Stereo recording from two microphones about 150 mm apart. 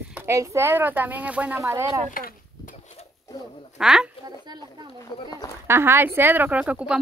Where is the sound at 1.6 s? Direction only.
20° right (ahead or behind).